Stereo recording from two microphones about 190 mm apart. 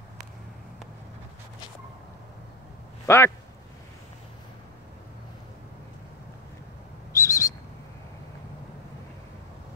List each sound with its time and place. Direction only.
3.1 s speech: 15° left (ahead or behind)
7.1 s bird: 15° left (ahead or behind)